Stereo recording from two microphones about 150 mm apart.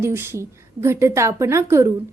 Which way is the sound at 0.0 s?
15° right (ahead or behind).